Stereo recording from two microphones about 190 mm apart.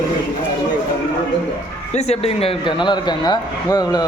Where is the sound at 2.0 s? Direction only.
30° left (ahead or behind).